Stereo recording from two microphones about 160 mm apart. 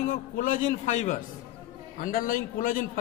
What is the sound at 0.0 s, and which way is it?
A man's voice, 60° left (ahead or behind).